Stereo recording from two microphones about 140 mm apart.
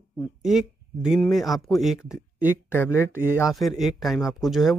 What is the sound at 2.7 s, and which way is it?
Speech, 15° left (ahead or behind).